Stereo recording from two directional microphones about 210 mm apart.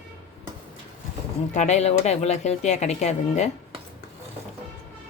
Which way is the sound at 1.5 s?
35° left (ahead or behind).